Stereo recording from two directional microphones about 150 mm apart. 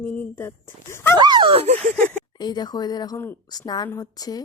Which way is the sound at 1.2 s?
30° right (ahead or behind).